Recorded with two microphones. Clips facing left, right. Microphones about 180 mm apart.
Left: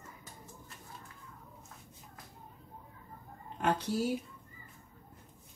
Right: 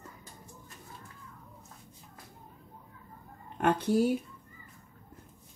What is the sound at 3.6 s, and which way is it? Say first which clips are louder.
Speech: right 6 dB; 55° right (ahead or behind).